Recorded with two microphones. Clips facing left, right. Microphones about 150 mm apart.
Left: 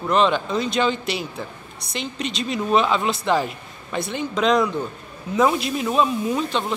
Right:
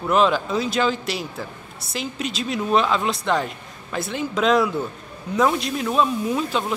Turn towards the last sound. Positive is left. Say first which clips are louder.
# even
turn(degrees=0)  # may be behind; listen again after turning